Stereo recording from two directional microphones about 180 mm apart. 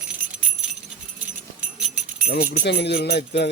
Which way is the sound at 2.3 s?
70° left (ahead or behind).